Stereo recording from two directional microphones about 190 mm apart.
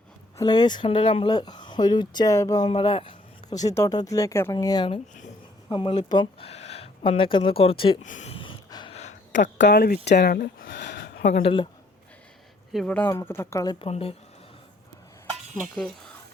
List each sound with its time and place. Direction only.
0.3 s speech: 20° left (ahead or behind)
2.6 s speech: 30° left (ahead or behind)
8.0 s a sound: 40° left (ahead or behind)
9.6 s speech: 60° left (ahead or behind)
11.2 s speech: 40° left (ahead or behind)
12.7 s speech: 5° left (ahead or behind)
13.8 s speech: 30° left (ahead or behind)